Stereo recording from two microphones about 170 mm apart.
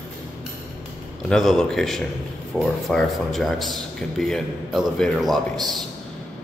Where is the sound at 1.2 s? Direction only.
5° left (ahead or behind).